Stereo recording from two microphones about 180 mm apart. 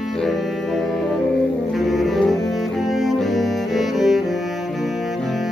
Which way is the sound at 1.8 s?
Centre (ahead or behind).